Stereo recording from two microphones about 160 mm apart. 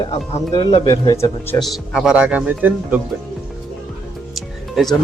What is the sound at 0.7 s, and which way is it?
Speech, 25° left (ahead or behind).